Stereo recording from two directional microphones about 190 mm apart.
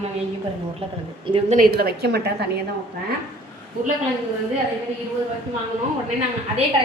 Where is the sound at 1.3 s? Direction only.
35° right (ahead or behind); by 2.5 s 55° right (ahead or behind).